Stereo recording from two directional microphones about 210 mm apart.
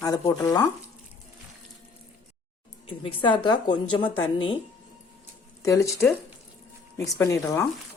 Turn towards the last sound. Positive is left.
turn(degrees=15)  # may be behind; listen again after turning